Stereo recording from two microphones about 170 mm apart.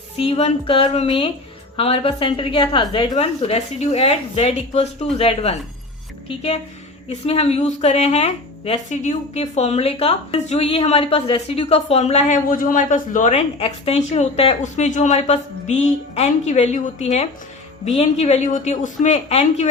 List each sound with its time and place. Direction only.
0.2 s a woman's voice: 35° left (ahead or behind)